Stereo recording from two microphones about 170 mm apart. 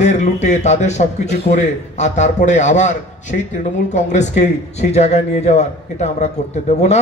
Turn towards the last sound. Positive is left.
turn(degrees=40)  # may be behind; listen again after turning